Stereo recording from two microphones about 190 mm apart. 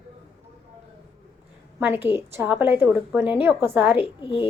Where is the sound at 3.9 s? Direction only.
25° left (ahead or behind).